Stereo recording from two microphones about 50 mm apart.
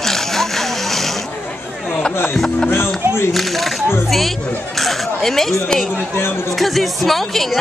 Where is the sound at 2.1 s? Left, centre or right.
Left.